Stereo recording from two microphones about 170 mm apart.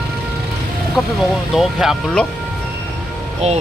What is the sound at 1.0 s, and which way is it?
Speech, centre (ahead or behind).